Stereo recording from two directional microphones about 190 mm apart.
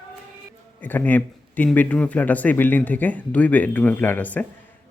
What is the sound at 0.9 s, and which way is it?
Speech, 10° left (ahead or behind).